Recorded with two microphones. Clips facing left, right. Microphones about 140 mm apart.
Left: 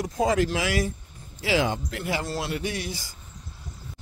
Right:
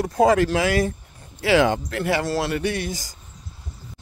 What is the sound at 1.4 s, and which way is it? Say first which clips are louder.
A man's voice: right 6 dB; 65° right (ahead or behind).